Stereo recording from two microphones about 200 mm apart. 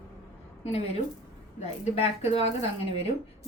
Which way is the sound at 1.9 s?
30° left (ahead or behind).